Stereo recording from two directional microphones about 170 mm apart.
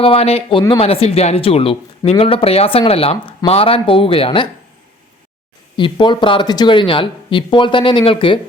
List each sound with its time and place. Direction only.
0.0 s speech: 35° left (ahead or behind)
5.7 s speech: 30° left (ahead or behind)